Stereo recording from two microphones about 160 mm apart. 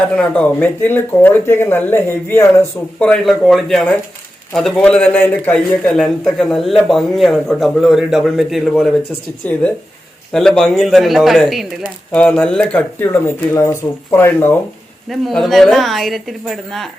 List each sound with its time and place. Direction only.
0.2 s speech: 10° left (ahead or behind)
15.1 s speech: centre (ahead or behind)